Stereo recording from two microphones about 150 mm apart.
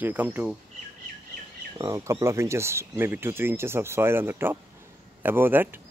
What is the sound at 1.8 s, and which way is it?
Speech, 20° right (ahead or behind).